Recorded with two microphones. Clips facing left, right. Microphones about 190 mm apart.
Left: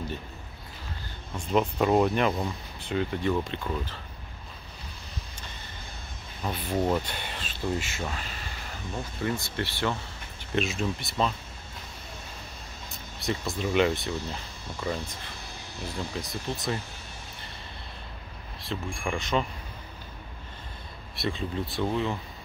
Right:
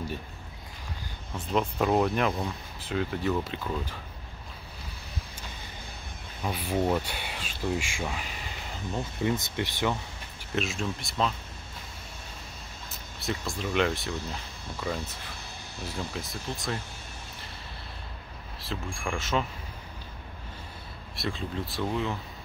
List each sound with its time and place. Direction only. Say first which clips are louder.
1.3 s speech: left 3 dB; centre (ahead or behind)
6.4 s speech: even; 10° right (ahead or behind)
10.5 s speech: left 3 dB; centre (ahead or behind)
13.2 s speech: left 3 dB; centre (ahead or behind)
16.2 s speech: left 2 dB; centre (ahead or behind)
18.6 s speech: left 2 dB; centre (ahead or behind)
21.2 s speech: left 2 dB; centre (ahead or behind)